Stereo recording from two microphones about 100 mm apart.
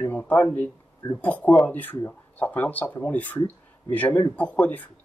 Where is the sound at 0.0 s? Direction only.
20° left (ahead or behind).